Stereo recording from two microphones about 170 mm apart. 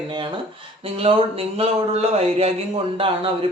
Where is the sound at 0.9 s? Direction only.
35° right (ahead or behind).